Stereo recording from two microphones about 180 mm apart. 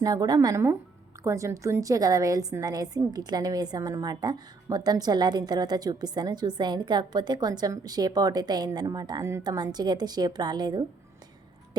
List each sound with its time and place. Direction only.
0.0 s a woman's voice: 20° right (ahead or behind)